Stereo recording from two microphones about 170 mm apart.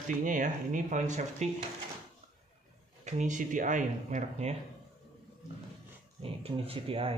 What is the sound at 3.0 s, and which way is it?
Speech, 45° right (ahead or behind).